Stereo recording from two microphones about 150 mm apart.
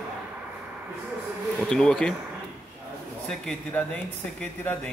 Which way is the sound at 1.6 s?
5° left (ahead or behind).